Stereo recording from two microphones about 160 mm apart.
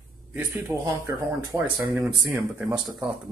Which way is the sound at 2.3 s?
5° right (ahead or behind).